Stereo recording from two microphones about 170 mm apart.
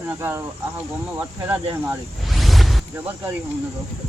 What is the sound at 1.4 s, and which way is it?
Speech, 10° right (ahead or behind).